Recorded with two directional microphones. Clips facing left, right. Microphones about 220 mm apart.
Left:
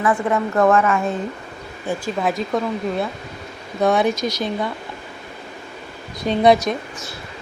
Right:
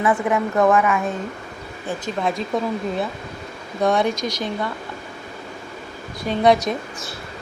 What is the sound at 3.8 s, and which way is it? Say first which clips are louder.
Speech: left 2 dB; 5° left (ahead or behind).